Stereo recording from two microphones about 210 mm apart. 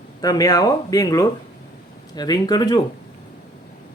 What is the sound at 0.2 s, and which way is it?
A man's voice, 15° left (ahead or behind).